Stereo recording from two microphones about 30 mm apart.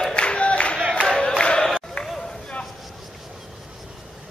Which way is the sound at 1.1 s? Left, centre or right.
Left.